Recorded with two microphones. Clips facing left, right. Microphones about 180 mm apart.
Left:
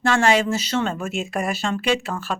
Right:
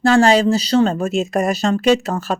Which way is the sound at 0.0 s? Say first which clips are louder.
Right 6 dB; 35° right (ahead or behind).